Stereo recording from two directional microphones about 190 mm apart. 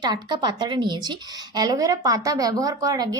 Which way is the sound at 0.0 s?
20° right (ahead or behind).